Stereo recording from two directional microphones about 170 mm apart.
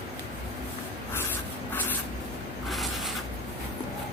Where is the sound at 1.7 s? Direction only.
10° left (ahead or behind).